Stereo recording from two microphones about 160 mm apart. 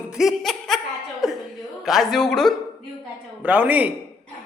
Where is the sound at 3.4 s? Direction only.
10° right (ahead or behind).